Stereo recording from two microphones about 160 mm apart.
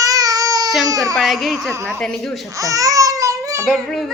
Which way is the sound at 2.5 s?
20° right (ahead or behind).